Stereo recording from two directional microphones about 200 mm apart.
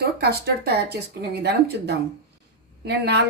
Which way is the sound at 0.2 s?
50° right (ahead or behind).